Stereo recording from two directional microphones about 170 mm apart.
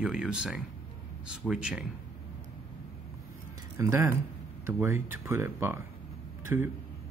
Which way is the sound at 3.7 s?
15° right (ahead or behind).